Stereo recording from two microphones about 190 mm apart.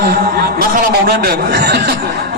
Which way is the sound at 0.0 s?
50° right (ahead or behind).